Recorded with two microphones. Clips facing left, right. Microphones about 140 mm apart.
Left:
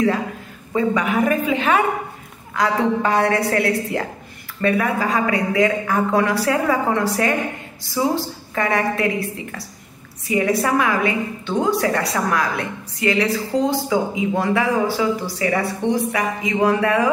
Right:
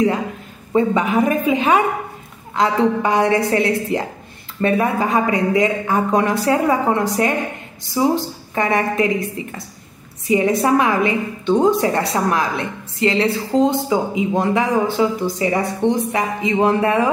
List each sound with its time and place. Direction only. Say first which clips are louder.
0.7 s a woman's voice: right 3 dB; 20° right (ahead or behind)